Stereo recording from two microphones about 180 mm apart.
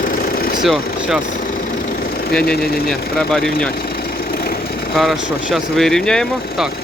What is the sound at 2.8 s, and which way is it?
Speech, centre (ahead or behind).